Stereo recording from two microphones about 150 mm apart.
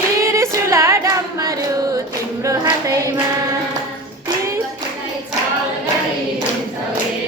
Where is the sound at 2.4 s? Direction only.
20° right (ahead or behind).